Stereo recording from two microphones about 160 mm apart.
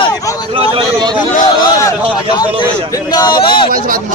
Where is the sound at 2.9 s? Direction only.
25° left (ahead or behind).